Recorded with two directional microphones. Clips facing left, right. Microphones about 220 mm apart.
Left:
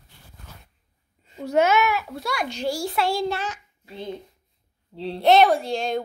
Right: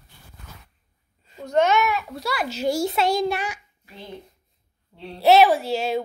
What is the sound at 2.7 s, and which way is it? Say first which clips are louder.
Child singing: right 4 dB; 20° right (ahead or behind).